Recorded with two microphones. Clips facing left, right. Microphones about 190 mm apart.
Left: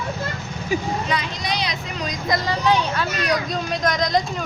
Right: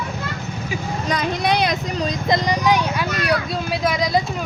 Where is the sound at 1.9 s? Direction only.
30° right (ahead or behind).